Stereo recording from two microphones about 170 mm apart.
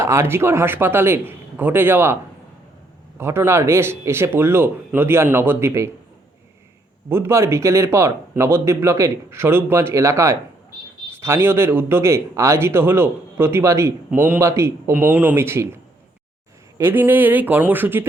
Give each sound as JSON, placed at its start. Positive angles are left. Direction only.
{"t": 0.0, "sound": "a man's voice", "side_deg": -15}
{"t": 3.2, "sound": "a man's voice", "side_deg": -15}
{"t": 7.1, "sound": "a man's voice", "side_deg": -15}